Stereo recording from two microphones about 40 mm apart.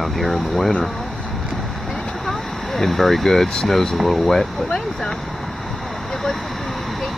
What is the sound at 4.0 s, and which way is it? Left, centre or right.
Speech, centre.